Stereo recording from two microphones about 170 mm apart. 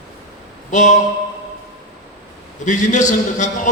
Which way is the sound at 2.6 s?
45° left (ahead or behind).